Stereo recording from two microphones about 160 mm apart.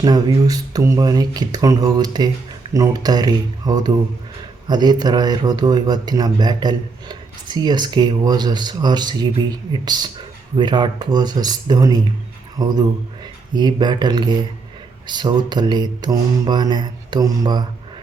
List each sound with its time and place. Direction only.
0.0 s a man's voice: 25° right (ahead or behind)